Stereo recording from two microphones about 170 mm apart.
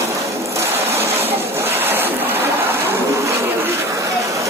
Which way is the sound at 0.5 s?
15° right (ahead or behind).